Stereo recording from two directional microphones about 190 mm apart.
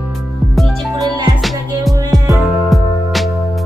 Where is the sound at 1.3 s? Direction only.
Centre (ahead or behind).